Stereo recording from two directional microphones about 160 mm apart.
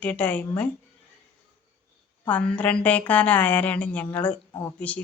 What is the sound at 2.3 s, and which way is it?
A man's voice, 10° left (ahead or behind).